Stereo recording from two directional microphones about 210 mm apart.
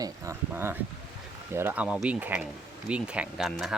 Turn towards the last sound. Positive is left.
turn(degrees=0)  # may be behind; listen again after turning